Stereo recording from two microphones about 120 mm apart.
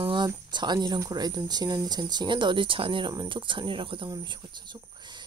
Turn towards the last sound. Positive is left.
turn(degrees=-40)  # may be behind; listen again after turning